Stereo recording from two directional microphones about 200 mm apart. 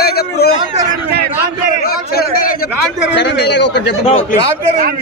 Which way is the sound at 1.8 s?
50° left (ahead or behind).